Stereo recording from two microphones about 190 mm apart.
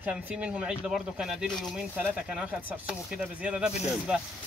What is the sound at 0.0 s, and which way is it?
Speech, 5° right (ahead or behind).